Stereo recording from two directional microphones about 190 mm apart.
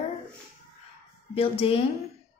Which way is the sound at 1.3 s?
30° left (ahead or behind).